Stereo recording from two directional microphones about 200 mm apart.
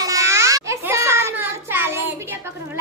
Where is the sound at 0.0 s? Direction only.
15° right (ahead or behind).